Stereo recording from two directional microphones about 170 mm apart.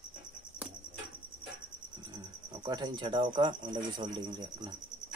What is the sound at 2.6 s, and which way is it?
Speech, 25° right (ahead or behind).